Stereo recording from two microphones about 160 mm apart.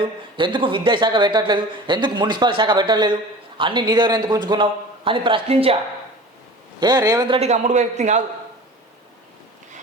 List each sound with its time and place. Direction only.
0.0 s speech: 30° right (ahead or behind)
6.7 s speech: 25° right (ahead or behind)
7.3 s a man's voice: 45° right (ahead or behind)